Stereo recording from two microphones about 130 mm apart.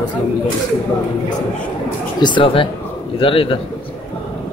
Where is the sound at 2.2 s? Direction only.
40° left (ahead or behind).